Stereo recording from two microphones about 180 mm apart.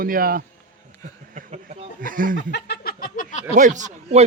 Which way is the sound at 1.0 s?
45° right (ahead or behind).